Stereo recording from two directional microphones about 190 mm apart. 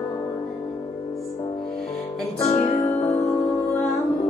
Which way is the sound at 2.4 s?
15° left (ahead or behind).